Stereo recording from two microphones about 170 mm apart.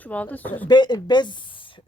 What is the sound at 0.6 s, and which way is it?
A woman's voice, 25° left (ahead or behind).